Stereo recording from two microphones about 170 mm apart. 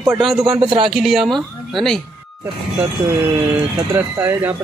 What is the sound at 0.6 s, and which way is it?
Speech, 30° right (ahead or behind).